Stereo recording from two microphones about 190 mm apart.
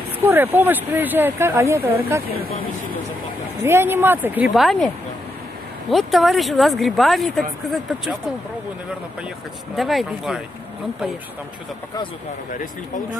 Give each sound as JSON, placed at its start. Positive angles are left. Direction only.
{"t": 0.2, "sound": "speech", "side_deg": -10}
{"t": 3.6, "sound": "speech", "side_deg": -10}
{"t": 9.8, "sound": "speech", "side_deg": 0}